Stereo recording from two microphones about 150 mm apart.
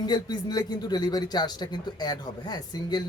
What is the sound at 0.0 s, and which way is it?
Speech, 25° left (ahead or behind).